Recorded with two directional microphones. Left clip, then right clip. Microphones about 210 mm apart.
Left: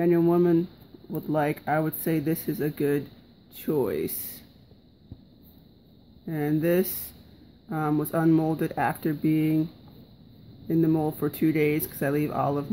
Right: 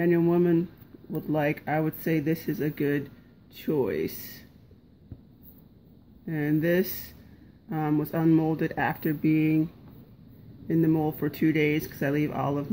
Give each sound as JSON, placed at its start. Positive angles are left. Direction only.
{"t": 0.0, "sound": "speech", "side_deg": 10}
{"t": 6.2, "sound": "speech", "side_deg": 5}
{"t": 10.7, "sound": "speech", "side_deg": 10}